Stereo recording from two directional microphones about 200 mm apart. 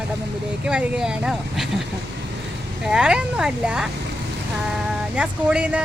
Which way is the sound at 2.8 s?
5° right (ahead or behind).